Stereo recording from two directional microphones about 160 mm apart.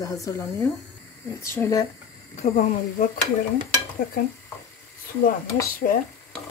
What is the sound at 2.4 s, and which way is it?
Speech, 60° left (ahead or behind).